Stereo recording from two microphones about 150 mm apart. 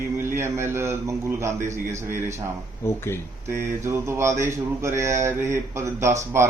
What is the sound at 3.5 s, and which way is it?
Speech, 15° right (ahead or behind).